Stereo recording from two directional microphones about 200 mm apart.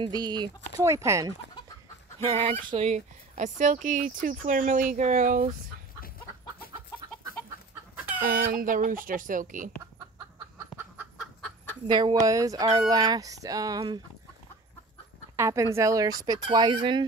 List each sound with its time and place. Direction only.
0.0 s speech: 20° right (ahead or behind)
2.7 s speech: 35° right (ahead or behind)
8.3 s speech: 45° right (ahead or behind)
11.0 s chicken: 5° right (ahead or behind)
11.9 s speech: 20° right (ahead or behind)
15.3 s speech: 15° right (ahead or behind)